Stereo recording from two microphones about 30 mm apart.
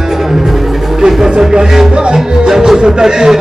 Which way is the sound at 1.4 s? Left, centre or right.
Centre.